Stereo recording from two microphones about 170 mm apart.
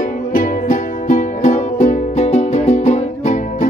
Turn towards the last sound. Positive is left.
turn(degrees=45)  # may be behind; listen again after turning